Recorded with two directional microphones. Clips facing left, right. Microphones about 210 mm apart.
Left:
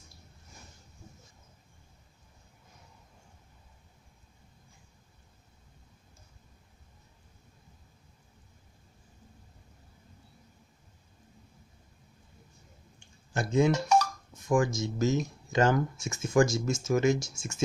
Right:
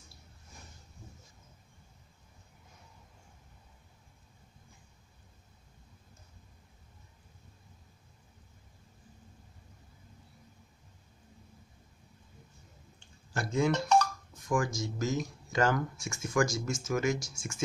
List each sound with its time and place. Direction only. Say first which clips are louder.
13.3 s speech: left 5 dB; 20° left (ahead or behind)
13.7 s speech: left 1 dB; 10° left (ahead or behind)
14.5 s speech: left 4 dB; 25° left (ahead or behind)